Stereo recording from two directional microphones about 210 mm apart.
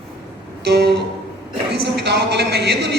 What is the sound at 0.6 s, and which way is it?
Speech, 50° right (ahead or behind).